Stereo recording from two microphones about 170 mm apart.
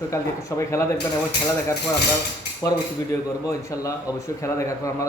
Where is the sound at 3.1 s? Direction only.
20° left (ahead or behind).